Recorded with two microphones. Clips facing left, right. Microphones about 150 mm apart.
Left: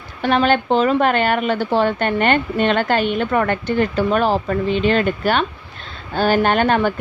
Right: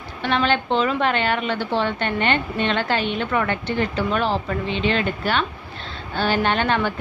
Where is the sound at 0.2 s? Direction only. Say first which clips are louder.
Left 5 dB; 45° left (ahead or behind).